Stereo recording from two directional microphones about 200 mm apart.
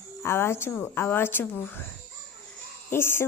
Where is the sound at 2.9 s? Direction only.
10° left (ahead or behind).